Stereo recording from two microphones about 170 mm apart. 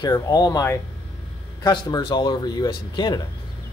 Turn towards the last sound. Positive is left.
turn(degrees=25)  # may be behind; listen again after turning